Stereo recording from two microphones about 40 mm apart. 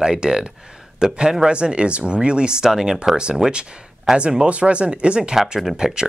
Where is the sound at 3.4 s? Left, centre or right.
Centre.